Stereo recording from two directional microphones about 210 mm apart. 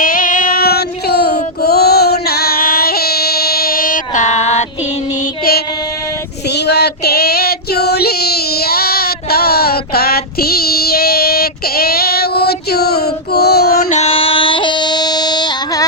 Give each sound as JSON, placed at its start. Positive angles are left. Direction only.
{"t": 0.0, "sound": "female singing", "side_deg": 40}
{"t": 6.7, "sound": "child singing", "side_deg": 50}
{"t": 14.0, "sound": "a sound", "side_deg": 25}